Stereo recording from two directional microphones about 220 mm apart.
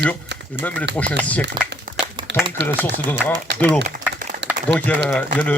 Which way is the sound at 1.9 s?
40° right (ahead or behind).